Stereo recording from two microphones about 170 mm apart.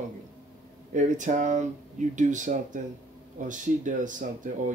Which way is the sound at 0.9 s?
45° right (ahead or behind).